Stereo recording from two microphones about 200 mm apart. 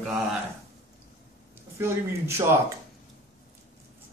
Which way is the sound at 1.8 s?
15° right (ahead or behind).